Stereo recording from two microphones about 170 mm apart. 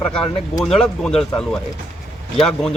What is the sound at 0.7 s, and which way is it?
Speech, 5° left (ahead or behind).